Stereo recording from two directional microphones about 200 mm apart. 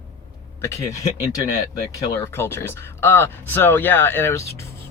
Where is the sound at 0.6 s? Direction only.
15° left (ahead or behind).